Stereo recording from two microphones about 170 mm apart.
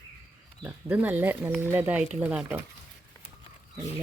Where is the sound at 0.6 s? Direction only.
10° right (ahead or behind).